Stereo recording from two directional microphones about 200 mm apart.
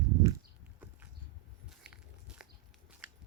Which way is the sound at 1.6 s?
5° right (ahead or behind).